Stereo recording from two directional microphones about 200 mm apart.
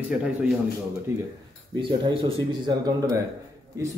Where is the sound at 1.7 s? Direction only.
25° right (ahead or behind).